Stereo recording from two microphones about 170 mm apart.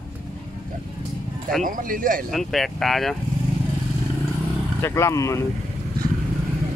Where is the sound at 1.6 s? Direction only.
55° right (ahead or behind).